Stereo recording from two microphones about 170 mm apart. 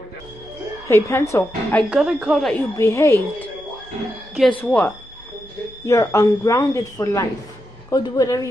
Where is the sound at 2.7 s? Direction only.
15° left (ahead or behind).